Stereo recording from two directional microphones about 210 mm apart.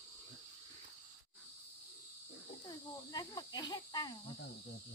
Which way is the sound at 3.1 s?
20° left (ahead or behind).